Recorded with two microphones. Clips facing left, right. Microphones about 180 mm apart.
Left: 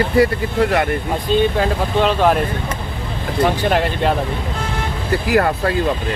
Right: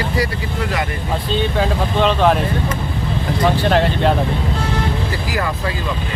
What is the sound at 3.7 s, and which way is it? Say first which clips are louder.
Speech: right 2 dB; 10° left (ahead or behind).